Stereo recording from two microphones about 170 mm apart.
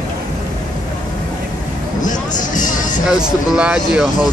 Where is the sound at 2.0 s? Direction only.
50° left (ahead or behind).